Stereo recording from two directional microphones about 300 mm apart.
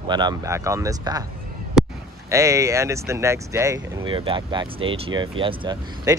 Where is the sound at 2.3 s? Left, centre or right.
Centre.